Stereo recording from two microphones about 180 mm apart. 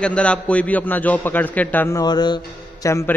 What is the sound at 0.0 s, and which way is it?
Speech, 5° left (ahead or behind).